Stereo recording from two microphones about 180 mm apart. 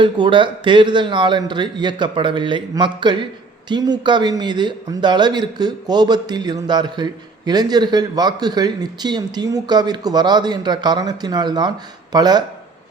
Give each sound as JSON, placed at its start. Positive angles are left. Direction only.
{"t": 0.0, "sound": "a man's voice", "side_deg": -25}